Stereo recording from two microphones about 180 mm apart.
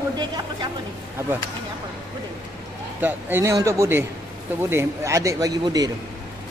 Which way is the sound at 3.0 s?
10° right (ahead or behind).